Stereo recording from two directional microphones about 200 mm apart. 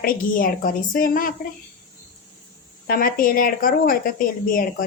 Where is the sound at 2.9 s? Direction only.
45° left (ahead or behind).